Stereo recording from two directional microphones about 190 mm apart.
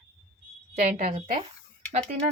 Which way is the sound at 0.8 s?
40° right (ahead or behind).